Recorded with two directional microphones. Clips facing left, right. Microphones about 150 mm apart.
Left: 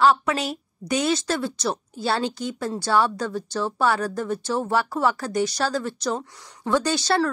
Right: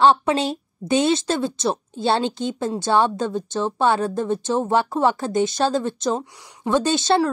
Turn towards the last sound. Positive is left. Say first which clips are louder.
# right 3 dB
turn(degrees=-20)  # may be behind; listen again after turning